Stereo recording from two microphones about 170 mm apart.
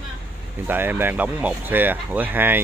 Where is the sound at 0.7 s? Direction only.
10° right (ahead or behind).